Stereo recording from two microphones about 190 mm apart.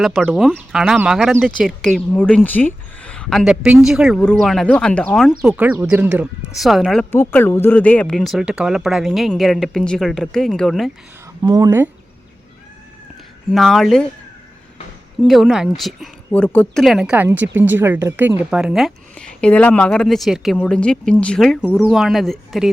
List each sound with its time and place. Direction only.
0.0 s speech: centre (ahead or behind)
7.1 s speech: 10° left (ahead or behind)
11.4 s speech: 20° right (ahead or behind)
13.5 s speech: centre (ahead or behind)
15.3 s speech: centre (ahead or behind)